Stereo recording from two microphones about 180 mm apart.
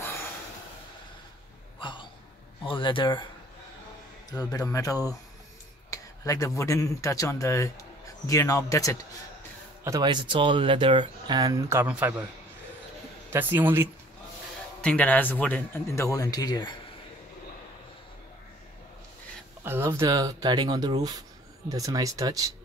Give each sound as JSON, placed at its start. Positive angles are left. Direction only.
{"t": 1.8, "sound": "a sound", "side_deg": 25}
{"t": 2.6, "sound": "speech", "side_deg": 30}
{"t": 4.3, "sound": "speech", "side_deg": 20}
{"t": 9.8, "sound": "speech", "side_deg": -20}
{"t": 13.3, "sound": "speech", "side_deg": -10}
{"t": 14.8, "sound": "speech", "side_deg": 5}
{"t": 19.6, "sound": "speech", "side_deg": -15}